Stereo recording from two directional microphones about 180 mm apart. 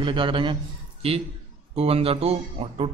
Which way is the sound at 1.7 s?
35° right (ahead or behind).